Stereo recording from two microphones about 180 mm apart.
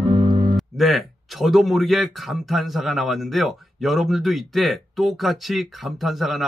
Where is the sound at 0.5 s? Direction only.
Centre (ahead or behind).